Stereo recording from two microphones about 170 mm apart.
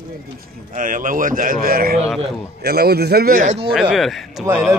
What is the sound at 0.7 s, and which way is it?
A man's voice, 50° right (ahead or behind).